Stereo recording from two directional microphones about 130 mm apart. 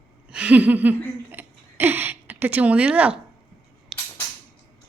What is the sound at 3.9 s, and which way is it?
Cap gun, centre (ahead or behind).